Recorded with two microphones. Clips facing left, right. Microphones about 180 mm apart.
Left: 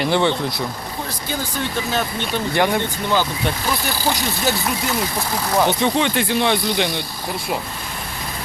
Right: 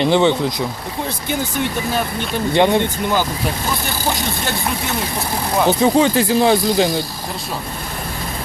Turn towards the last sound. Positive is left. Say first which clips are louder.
# right 5 dB
turn(degrees=-40)  # may be behind; listen again after turning